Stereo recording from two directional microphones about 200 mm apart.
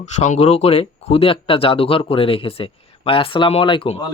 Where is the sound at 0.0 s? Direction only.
35° left (ahead or behind).